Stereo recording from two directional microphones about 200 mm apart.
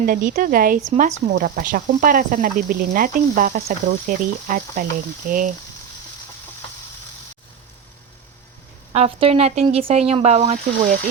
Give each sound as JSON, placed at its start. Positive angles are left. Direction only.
{"t": 0.0, "sound": "speech", "side_deg": -45}
{"t": 8.9, "sound": "speech", "side_deg": -30}